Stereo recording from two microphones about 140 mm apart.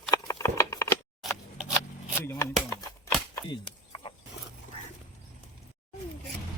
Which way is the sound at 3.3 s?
35° left (ahead or behind).